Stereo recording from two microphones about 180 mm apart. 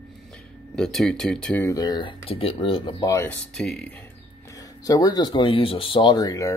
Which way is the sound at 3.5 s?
5° left (ahead or behind).